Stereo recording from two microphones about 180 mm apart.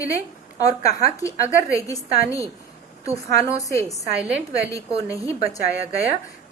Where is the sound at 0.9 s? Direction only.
20° left (ahead or behind).